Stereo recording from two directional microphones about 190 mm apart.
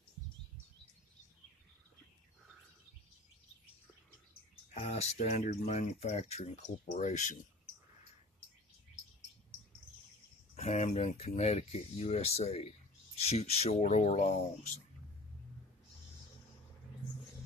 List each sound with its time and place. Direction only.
5.0 s speech: 35° left (ahead or behind)
10.5 s speech: 35° left (ahead or behind)